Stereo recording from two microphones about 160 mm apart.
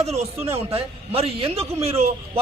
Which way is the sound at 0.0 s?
40° right (ahead or behind).